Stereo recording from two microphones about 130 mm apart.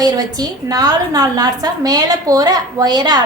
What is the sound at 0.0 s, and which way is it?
A woman's voice, 30° right (ahead or behind).